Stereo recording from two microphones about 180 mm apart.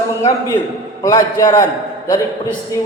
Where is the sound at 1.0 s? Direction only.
20° left (ahead or behind).